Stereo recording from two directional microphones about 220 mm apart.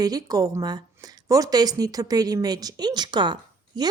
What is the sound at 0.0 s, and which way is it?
Speech, 15° right (ahead or behind).